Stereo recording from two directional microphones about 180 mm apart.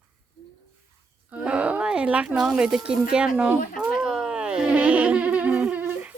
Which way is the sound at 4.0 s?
5° right (ahead or behind).